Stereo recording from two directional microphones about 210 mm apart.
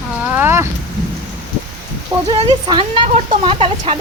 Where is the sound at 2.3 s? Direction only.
25° right (ahead or behind).